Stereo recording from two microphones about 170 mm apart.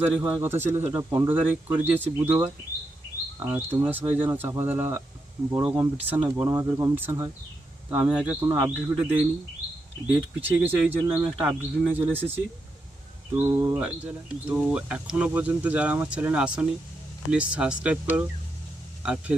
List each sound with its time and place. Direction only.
0.0 s speech: 10° right (ahead or behind)
3.4 s speech: 10° right (ahead or behind)
13.4 s speech: 20° right (ahead or behind)
13.7 s speech: 10° right (ahead or behind)